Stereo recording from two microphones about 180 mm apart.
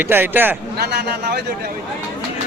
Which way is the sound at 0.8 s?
65° right (ahead or behind).